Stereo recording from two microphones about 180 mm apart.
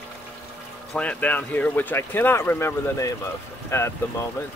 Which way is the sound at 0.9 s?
10° left (ahead or behind).